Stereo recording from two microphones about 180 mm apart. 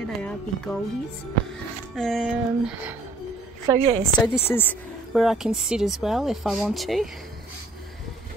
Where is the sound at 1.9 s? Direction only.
Centre (ahead or behind).